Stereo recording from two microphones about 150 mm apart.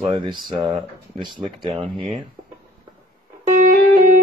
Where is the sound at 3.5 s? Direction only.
60° right (ahead or behind).